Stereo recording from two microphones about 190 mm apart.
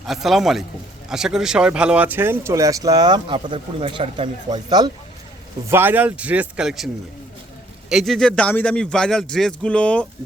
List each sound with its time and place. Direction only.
0.0 s a man's voice: centre (ahead or behind); by 4.9 s 20° right (ahead or behind)
5.6 s a man's voice: 10° right (ahead or behind); by 10.1 s 5° left (ahead or behind)